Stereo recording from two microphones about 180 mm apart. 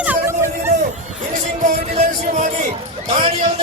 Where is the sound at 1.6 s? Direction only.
45° right (ahead or behind).